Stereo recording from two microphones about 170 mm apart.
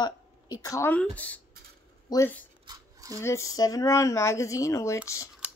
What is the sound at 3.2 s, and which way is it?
Speech, 15° left (ahead or behind).